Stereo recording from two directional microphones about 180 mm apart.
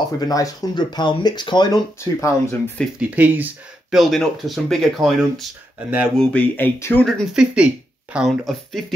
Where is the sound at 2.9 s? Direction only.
10° right (ahead or behind).